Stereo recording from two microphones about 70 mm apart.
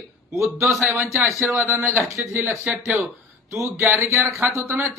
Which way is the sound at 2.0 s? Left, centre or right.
Right.